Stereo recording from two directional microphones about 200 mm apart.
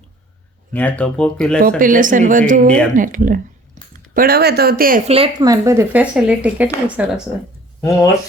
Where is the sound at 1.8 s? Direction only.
40° right (ahead or behind).